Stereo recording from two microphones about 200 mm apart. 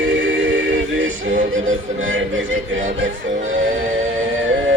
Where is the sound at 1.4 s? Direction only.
40° right (ahead or behind).